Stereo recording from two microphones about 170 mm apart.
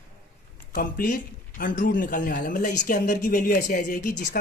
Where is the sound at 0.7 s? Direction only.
55° left (ahead or behind).